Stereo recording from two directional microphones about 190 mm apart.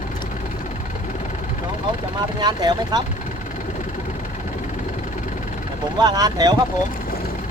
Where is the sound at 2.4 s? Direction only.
20° right (ahead or behind).